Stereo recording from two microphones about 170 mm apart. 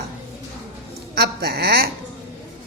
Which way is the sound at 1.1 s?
70° right (ahead or behind).